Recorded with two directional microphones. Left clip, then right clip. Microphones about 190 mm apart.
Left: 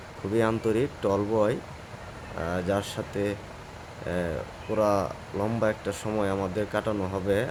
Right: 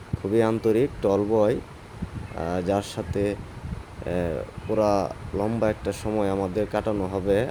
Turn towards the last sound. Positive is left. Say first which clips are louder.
# right 3 dB
turn(degrees=-15)  # may be behind; listen again after turning